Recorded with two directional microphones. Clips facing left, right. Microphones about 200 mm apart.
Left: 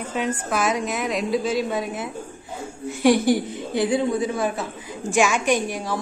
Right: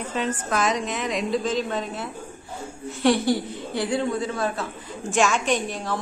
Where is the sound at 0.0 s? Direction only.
10° left (ahead or behind).